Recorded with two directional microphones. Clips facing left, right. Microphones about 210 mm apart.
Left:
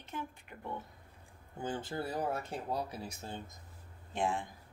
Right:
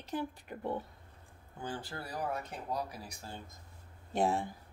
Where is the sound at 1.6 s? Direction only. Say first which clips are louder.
Left 4 dB; 20° left (ahead or behind).